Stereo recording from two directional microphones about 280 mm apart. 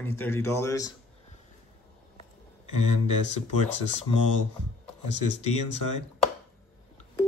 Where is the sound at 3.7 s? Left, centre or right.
Left.